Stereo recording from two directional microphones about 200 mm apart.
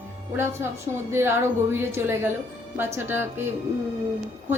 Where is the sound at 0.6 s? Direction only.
15° right (ahead or behind).